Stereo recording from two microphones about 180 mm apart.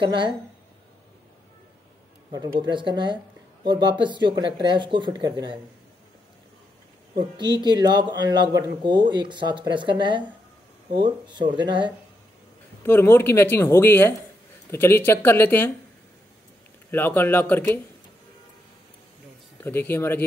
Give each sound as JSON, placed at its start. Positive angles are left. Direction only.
{"t": 0.0, "sound": "speech", "side_deg": -25}
{"t": 2.6, "sound": "speech", "side_deg": -25}
{"t": 7.2, "sound": "speech", "side_deg": -25}
{"t": 12.8, "sound": "speech", "side_deg": 15}
{"t": 16.9, "sound": "speech", "side_deg": 10}
{"t": 19.6, "sound": "speech", "side_deg": 10}